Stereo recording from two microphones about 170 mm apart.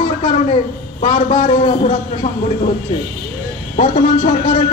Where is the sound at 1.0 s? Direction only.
40° left (ahead or behind).